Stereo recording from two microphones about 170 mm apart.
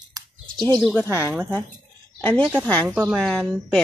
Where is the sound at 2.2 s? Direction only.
10° left (ahead or behind).